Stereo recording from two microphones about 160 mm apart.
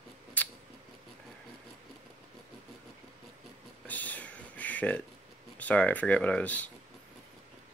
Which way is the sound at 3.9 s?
10° left (ahead or behind).